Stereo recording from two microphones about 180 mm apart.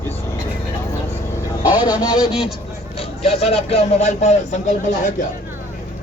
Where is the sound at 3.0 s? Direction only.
35° left (ahead or behind).